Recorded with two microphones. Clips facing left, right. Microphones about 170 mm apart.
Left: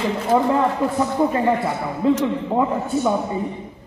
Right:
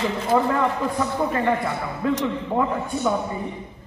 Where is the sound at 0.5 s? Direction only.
20° left (ahead or behind).